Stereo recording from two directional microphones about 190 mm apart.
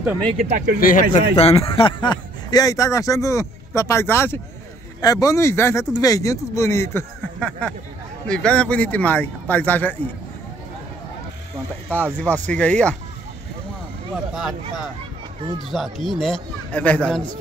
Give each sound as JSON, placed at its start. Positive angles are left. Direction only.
{"t": 0.3, "sound": "speech", "side_deg": -35}
{"t": 0.7, "sound": "speech", "side_deg": 45}
{"t": 1.3, "sound": "speech", "side_deg": 30}
{"t": 11.9, "sound": "speech", "side_deg": 10}
{"t": 14.1, "sound": "speech", "side_deg": -5}